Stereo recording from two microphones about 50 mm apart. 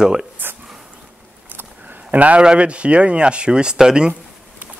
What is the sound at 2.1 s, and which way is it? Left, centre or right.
Speech, right.